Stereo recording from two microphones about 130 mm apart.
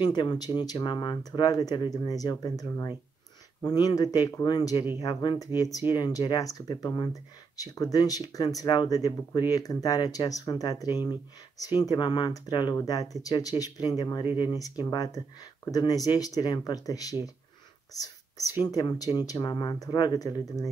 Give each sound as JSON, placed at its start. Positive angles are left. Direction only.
{"t": 0.0, "sound": "speech", "side_deg": 35}